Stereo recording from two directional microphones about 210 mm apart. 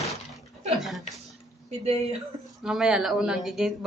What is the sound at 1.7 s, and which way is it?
Speech, 30° right (ahead or behind).